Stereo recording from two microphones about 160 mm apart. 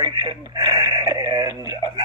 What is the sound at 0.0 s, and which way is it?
Speech, 25° right (ahead or behind).